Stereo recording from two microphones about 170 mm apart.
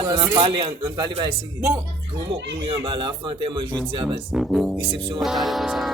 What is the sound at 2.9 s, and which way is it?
Speech, 30° right (ahead or behind).